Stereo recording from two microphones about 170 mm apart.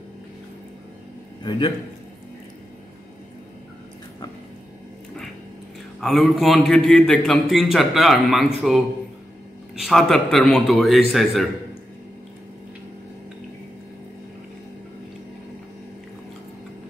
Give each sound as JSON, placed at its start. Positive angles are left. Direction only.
{"t": 1.4, "sound": "a man's voice", "side_deg": 25}
{"t": 5.9, "sound": "a man's voice", "side_deg": 0}